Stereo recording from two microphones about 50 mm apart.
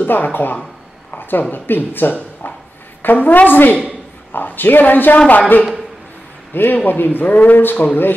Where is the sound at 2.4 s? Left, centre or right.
Left.